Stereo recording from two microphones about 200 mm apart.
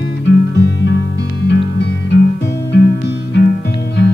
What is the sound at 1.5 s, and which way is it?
Music, 60° left (ahead or behind).